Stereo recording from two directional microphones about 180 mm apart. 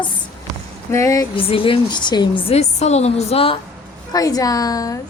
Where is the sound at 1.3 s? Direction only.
30° left (ahead or behind).